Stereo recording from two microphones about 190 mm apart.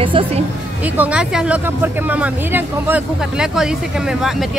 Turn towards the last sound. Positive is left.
turn(degrees=0)  # may be behind; listen again after turning